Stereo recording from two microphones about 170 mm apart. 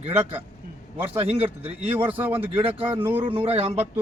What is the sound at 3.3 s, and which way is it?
Speech, 35° right (ahead or behind).